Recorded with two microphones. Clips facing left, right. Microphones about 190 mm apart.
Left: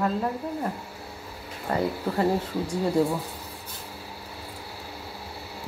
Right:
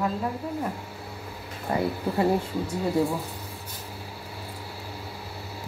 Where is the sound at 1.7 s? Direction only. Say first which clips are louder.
Even; 15° right (ahead or behind).